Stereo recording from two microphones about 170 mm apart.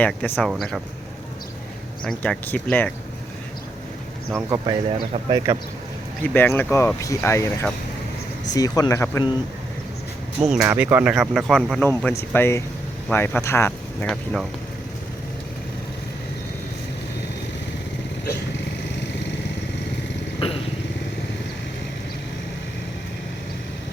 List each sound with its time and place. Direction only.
0.0 s speech: 10° left (ahead or behind)
2.0 s speech: 5° left (ahead or behind)
4.3 s speech: 15° right (ahead or behind)
4.6 s speech: 25° right (ahead or behind)
6.2 s speech: 10° left (ahead or behind)
10.4 s speech: 5° right (ahead or behind)
12.3 s speech: 15° left (ahead or behind)